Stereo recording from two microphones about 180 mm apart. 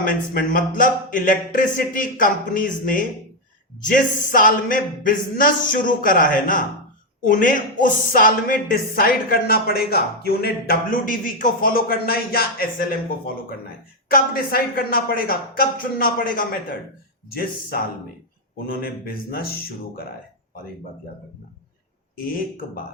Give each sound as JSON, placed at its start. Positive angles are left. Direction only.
{"t": 0.1, "sound": "speech", "side_deg": 50}
{"t": 14.1, "sound": "speech", "side_deg": 55}